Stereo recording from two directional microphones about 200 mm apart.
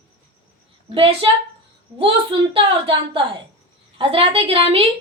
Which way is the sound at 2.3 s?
25° right (ahead or behind).